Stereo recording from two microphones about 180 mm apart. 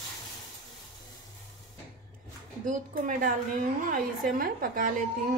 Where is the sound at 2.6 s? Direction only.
45° right (ahead or behind).